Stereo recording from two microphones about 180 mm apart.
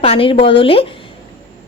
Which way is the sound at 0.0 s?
30° left (ahead or behind).